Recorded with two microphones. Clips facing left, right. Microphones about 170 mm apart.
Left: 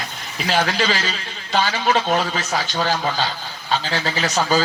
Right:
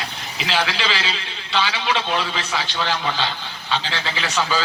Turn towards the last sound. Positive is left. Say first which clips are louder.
# left 4 dB
turn(degrees=40)  # may be behind; listen again after turning